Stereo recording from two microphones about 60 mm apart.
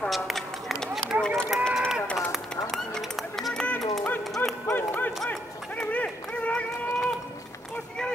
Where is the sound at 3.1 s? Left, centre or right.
Centre.